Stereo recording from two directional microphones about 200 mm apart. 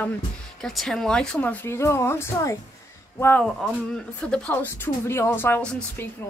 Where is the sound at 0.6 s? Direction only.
5° left (ahead or behind).